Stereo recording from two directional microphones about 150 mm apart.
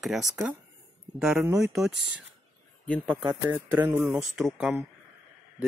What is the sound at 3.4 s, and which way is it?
Speech, 20° right (ahead or behind).